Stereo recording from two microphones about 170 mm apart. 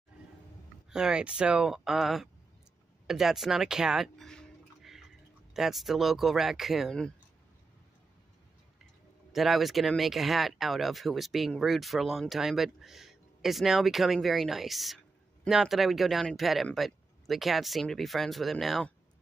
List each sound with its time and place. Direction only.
0.8 s speech: 5° right (ahead or behind)
3.1 s a sound: centre (ahead or behind)
5.5 s speech: centre (ahead or behind)
9.3 s speech: centre (ahead or behind)